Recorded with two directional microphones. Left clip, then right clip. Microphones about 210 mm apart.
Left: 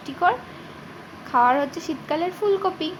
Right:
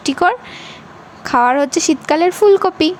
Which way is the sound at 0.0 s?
50° right (ahead or behind).